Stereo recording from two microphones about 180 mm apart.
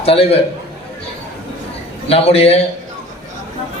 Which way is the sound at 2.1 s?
35° left (ahead or behind).